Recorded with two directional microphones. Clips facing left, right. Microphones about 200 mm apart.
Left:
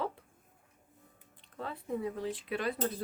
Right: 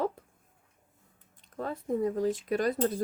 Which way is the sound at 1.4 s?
45° right (ahead or behind).